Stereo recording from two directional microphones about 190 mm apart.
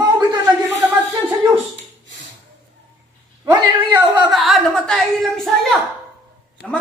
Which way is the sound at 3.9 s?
25° right (ahead or behind).